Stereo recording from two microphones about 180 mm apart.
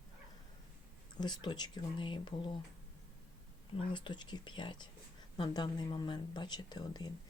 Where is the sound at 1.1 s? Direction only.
25° left (ahead or behind).